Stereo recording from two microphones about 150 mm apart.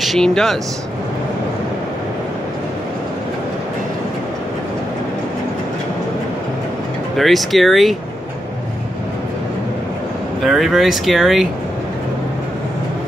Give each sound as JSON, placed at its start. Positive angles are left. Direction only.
{"t": 0.0, "sound": "speech", "side_deg": 0}
{"t": 7.2, "sound": "speech", "side_deg": 0}
{"t": 10.4, "sound": "speech", "side_deg": 0}